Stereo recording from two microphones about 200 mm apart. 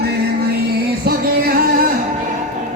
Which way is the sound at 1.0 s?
50° right (ahead or behind).